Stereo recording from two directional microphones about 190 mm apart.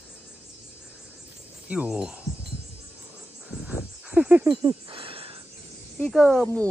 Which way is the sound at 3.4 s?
5° right (ahead or behind).